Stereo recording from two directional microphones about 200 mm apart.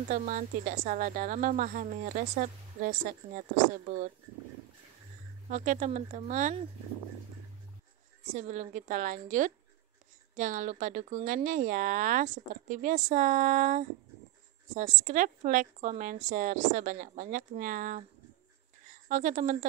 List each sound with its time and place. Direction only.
0.1 s speech: 40° right (ahead or behind)
5.5 s speech: 35° right (ahead or behind)
8.3 s speech: 35° right (ahead or behind)